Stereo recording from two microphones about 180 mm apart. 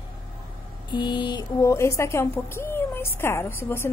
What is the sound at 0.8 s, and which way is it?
Speech, 25° left (ahead or behind).